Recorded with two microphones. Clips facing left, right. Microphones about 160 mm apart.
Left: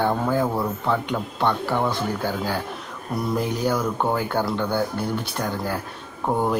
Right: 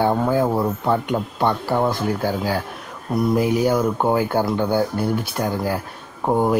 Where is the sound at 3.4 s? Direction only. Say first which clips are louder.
Right 4 dB; 10° right (ahead or behind).